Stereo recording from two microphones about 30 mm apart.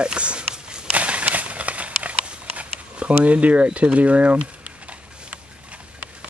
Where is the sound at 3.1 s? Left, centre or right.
Right.